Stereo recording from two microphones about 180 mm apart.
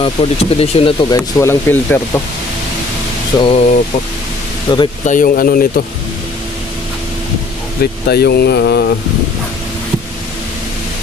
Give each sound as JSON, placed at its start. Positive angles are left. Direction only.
{"t": 0.0, "sound": "speech", "side_deg": 30}
{"t": 1.1, "sound": "speech", "side_deg": 15}
{"t": 3.3, "sound": "speech", "side_deg": 30}
{"t": 4.7, "sound": "speech", "side_deg": 25}
{"t": 5.0, "sound": "speech", "side_deg": 45}
{"t": 7.8, "sound": "speech", "side_deg": 65}